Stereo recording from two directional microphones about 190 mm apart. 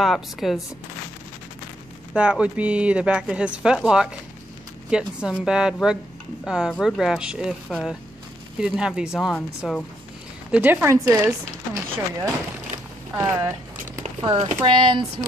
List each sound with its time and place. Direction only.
0.0 s speech: centre (ahead or behind)
2.1 s speech: 5° right (ahead or behind)
9.3 s speech: 5° left (ahead or behind)
10.5 s speech: 10° right (ahead or behind)
13.1 s a sound: 15° right (ahead or behind)
14.2 s speech: 25° right (ahead or behind)